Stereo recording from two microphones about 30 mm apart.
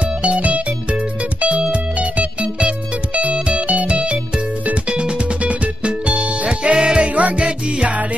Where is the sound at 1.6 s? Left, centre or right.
Right.